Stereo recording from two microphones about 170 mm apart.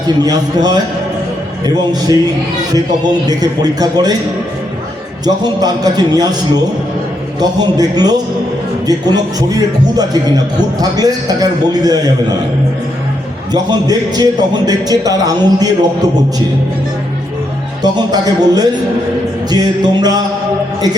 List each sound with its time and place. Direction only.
0.2 s a man's voice: 25° right (ahead or behind)
5.2 s a man's voice: 25° right (ahead or behind)
7.3 s a man's voice: 25° right (ahead or behind)
13.5 s a man's voice: 25° right (ahead or behind)
17.8 s a man's voice: 25° right (ahead or behind)